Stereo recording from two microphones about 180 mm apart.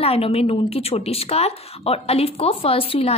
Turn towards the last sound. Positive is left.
turn(degrees=30)  # may be behind; listen again after turning